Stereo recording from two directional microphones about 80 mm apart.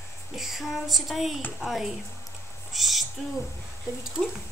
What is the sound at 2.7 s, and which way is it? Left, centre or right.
Owl, centre.